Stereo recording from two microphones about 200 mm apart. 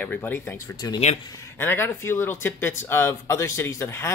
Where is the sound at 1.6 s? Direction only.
10° left (ahead or behind).